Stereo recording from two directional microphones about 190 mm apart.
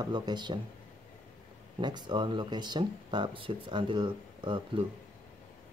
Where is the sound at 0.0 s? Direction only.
20° right (ahead or behind).